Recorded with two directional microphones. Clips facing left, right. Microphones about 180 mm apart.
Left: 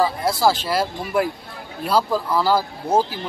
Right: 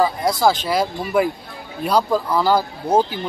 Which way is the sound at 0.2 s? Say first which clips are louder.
Right 1 dB; 5° left (ahead or behind).